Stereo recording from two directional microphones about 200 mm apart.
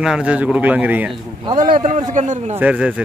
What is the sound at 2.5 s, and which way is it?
Speech, 5° right (ahead or behind).